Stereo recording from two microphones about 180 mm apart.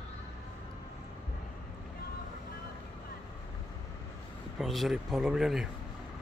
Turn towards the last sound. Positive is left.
turn(degrees=0)  # may be behind; listen again after turning